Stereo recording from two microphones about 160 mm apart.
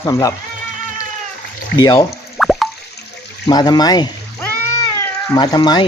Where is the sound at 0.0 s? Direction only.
20° left (ahead or behind).